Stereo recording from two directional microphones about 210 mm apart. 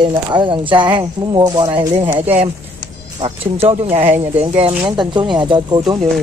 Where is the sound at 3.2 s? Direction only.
25° right (ahead or behind).